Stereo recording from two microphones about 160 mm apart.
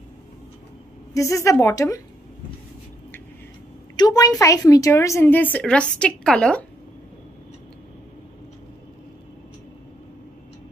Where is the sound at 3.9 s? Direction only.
25° left (ahead or behind).